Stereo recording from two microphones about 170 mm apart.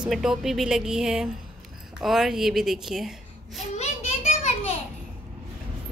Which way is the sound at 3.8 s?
40° left (ahead or behind).